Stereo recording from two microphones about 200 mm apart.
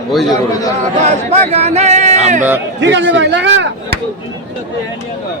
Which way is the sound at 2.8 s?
65° right (ahead or behind).